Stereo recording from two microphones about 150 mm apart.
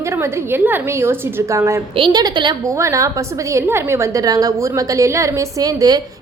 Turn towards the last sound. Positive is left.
turn(degrees=-25)  # may be behind; listen again after turning